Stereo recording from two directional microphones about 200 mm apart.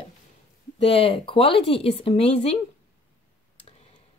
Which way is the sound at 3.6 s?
30° left (ahead or behind).